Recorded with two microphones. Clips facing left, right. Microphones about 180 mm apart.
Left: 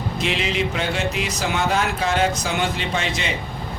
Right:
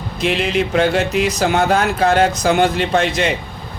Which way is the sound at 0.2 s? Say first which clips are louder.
Right 6 dB; 55° right (ahead or behind).